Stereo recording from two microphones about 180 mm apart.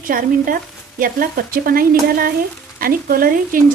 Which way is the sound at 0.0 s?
50° right (ahead or behind).